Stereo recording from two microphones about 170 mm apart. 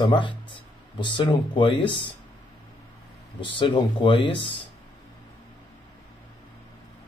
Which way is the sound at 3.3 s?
30° left (ahead or behind).